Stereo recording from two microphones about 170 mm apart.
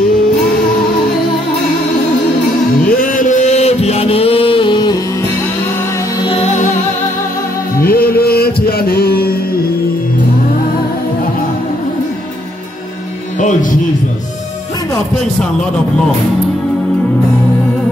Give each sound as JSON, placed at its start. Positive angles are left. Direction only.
{"t": 2.8, "sound": "a sound", "side_deg": 55}
{"t": 6.2, "sound": "music", "side_deg": 45}
{"t": 7.8, "sound": "music", "side_deg": 60}
{"t": 13.4, "sound": "music", "side_deg": 50}